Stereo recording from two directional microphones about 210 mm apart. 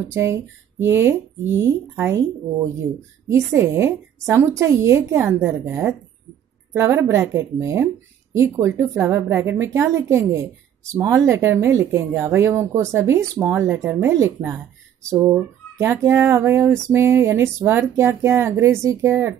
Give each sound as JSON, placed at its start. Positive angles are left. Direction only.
{"t": 0.1, "sound": "speech", "side_deg": -10}